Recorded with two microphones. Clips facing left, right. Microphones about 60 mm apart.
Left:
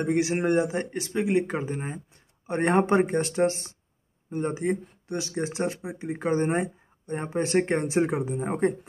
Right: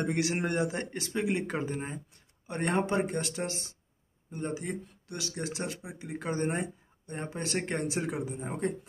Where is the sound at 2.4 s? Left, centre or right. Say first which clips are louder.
Left 7 dB; left.